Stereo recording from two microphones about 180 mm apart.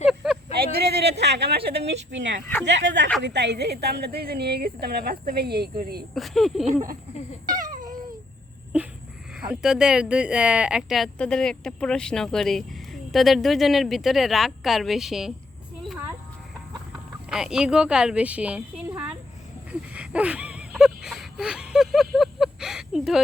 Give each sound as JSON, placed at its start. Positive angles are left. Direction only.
{"t": 0.1, "sound": "a sound", "side_deg": 0}
{"t": 0.6, "sound": "a woman's voice", "side_deg": -60}
{"t": 2.0, "sound": "speech", "side_deg": -80}
{"t": 3.2, "sound": "a woman's voice", "side_deg": -70}
{"t": 6.1, "sound": "speech", "side_deg": 0}
{"t": 9.4, "sound": "speech", "side_deg": -5}
{"t": 17.2, "sound": "speech", "side_deg": -5}
{"t": 19.9, "sound": "a sound", "side_deg": -5}